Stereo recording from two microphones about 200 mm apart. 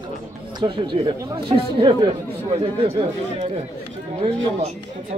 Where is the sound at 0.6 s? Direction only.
25° right (ahead or behind).